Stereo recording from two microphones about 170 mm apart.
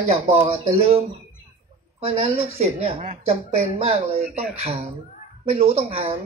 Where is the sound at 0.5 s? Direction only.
35° right (ahead or behind).